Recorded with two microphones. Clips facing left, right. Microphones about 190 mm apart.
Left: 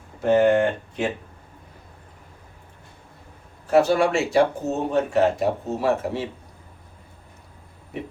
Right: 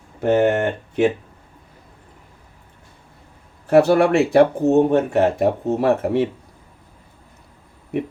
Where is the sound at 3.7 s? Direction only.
60° right (ahead or behind).